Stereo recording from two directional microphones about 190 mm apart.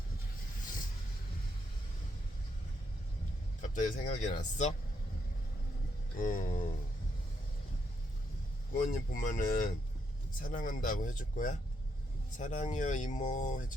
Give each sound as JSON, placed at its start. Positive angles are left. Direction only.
{"t": 3.6, "sound": "speech", "side_deg": 45}
{"t": 6.1, "sound": "a sound", "side_deg": 45}
{"t": 8.7, "sound": "speech", "side_deg": 45}